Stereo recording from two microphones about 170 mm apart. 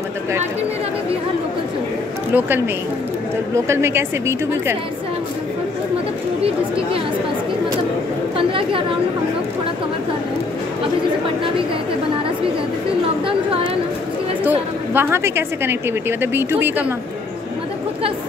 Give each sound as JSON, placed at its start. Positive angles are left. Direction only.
{"t": 2.3, "sound": "a woman's voice", "side_deg": -10}
{"t": 8.4, "sound": "chatter", "side_deg": -30}
{"t": 14.4, "sound": "a woman's voice", "side_deg": -10}